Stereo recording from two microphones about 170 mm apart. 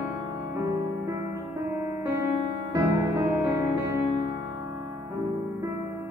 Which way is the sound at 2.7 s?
15° right (ahead or behind).